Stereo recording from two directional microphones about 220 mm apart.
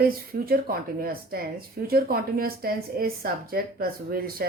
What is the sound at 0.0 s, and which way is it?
A woman's voice, 40° right (ahead or behind).